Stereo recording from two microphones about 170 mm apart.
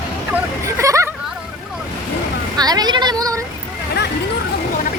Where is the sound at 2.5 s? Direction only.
25° right (ahead or behind).